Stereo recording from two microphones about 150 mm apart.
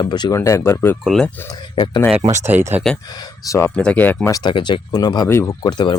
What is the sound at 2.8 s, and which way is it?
Speech, centre (ahead or behind).